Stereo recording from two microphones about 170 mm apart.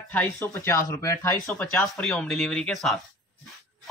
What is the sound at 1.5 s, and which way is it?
A man's voice, 5° left (ahead or behind).